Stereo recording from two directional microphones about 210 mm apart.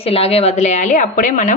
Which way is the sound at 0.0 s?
30° left (ahead or behind).